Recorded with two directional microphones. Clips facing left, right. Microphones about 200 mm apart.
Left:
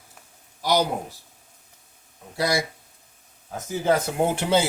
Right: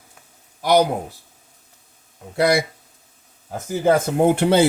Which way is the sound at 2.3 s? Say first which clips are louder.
Right 7 dB; 60° right (ahead or behind).